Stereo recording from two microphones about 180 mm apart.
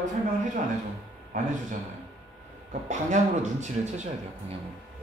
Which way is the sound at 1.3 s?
45° right (ahead or behind).